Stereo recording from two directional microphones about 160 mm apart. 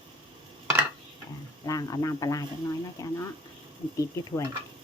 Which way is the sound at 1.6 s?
25° left (ahead or behind).